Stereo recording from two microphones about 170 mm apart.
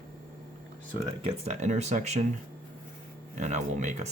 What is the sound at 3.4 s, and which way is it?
Speech, 45° right (ahead or behind).